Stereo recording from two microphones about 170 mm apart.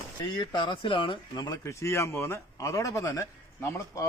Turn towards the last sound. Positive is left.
turn(degrees=15)  # may be behind; listen again after turning